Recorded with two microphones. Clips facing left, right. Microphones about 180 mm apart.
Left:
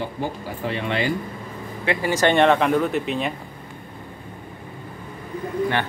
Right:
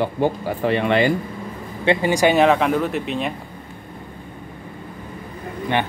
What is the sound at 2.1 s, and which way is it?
Speech, 10° right (ahead or behind).